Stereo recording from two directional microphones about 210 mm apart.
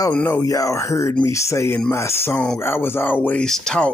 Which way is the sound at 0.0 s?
10° left (ahead or behind).